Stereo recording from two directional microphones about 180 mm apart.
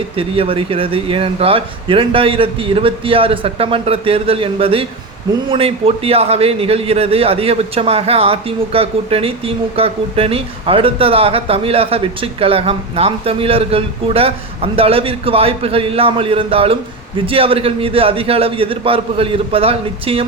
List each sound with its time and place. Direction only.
0.2 s a man's voice: 30° right (ahead or behind)